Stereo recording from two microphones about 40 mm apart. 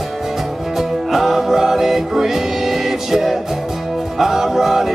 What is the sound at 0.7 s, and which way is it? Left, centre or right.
Music, centre.